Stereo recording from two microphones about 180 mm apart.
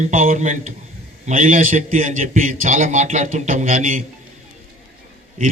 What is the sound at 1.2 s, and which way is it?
A man's voice, 45° right (ahead or behind).